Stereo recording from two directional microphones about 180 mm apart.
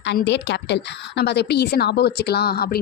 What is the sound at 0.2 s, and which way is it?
A woman's voice, 75° left (ahead or behind).